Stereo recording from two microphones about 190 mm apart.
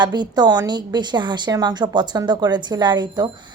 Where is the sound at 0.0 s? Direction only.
20° right (ahead or behind).